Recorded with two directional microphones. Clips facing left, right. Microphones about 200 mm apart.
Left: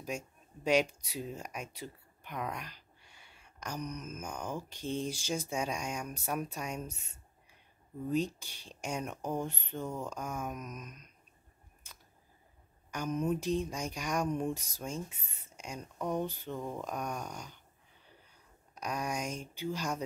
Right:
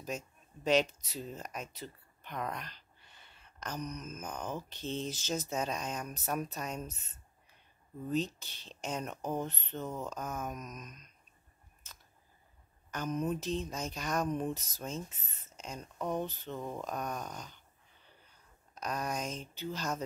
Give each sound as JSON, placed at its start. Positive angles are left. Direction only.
{"t": 0.1, "sound": "speech", "side_deg": 10}
{"t": 11.8, "sound": "a sound", "side_deg": 10}
{"t": 12.9, "sound": "speech", "side_deg": 10}
{"t": 18.8, "sound": "speech", "side_deg": 10}